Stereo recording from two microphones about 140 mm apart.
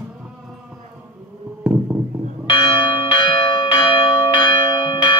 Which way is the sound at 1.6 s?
10° right (ahead or behind).